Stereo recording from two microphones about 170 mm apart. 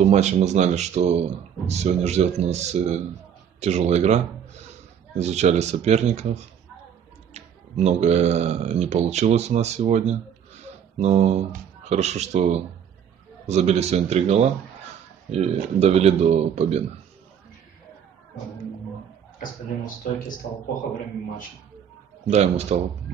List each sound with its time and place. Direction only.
0.0 s speech: 40° right (ahead or behind)
7.3 s speech: 40° right (ahead or behind)
22.3 s speech: 40° right (ahead or behind)